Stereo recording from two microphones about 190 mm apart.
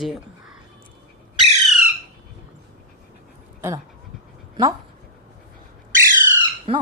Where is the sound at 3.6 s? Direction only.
15° right (ahead or behind).